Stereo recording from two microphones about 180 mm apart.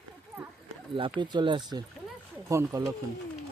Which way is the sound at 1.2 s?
25° right (ahead or behind).